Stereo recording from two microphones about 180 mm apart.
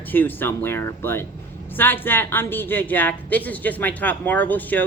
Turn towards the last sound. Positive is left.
turn(degrees=10)  # may be behind; listen again after turning